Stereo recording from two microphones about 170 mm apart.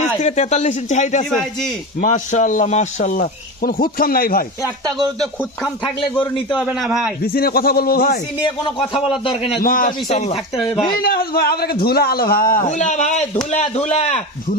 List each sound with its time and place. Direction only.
0.2 s speech: 45° left (ahead or behind)
5.2 s speech: 5° left (ahead or behind)
7.3 s a man's voice: 60° left (ahead or behind)
9.2 s a man's voice: 30° left (ahead or behind)
9.6 s a man's voice: 55° left (ahead or behind)
10.1 s a man's voice: 40° left (ahead or behind)
11.0 s a man's voice: 60° left (ahead or behind); by 14.2 s 40° left (ahead or behind)